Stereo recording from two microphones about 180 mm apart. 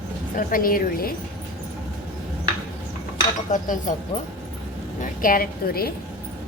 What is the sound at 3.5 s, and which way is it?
Speech, 45° left (ahead or behind).